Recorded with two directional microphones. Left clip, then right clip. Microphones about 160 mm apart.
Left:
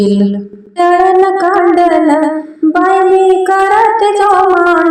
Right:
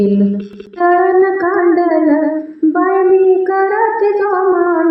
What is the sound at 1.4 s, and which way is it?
Speech, 20° left (ahead or behind).